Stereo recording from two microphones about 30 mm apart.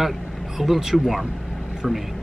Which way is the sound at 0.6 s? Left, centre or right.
Centre.